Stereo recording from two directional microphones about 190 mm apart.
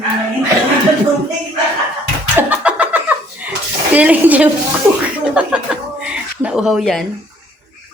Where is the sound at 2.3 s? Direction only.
5° right (ahead or behind).